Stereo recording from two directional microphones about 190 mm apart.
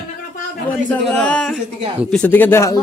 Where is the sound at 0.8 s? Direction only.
10° left (ahead or behind).